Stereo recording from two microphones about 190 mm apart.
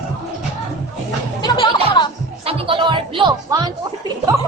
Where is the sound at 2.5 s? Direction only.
30° right (ahead or behind).